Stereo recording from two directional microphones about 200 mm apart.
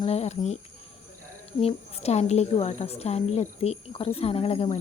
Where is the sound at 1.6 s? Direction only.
30° left (ahead or behind).